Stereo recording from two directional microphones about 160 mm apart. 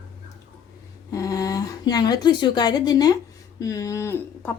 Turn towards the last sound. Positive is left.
turn(degrees=15)  # may be behind; listen again after turning